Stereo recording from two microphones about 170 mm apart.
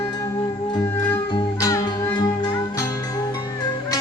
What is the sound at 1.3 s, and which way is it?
Music, 25° left (ahead or behind).